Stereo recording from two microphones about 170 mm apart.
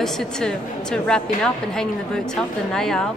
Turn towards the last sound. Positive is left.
turn(degrees=5)  # may be behind; listen again after turning